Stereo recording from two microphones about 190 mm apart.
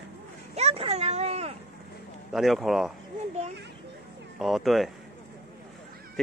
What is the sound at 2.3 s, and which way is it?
Speech, centre (ahead or behind).